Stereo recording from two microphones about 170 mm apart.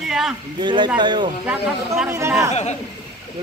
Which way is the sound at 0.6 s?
25° right (ahead or behind).